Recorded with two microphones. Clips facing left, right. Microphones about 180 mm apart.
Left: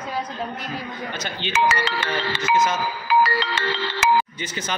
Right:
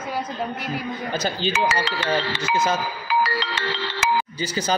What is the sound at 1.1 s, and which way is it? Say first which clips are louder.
Speech: right 3 dB; 35° right (ahead or behind).